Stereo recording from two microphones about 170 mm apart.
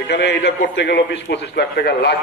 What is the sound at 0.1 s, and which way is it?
A man's voice, 90° left.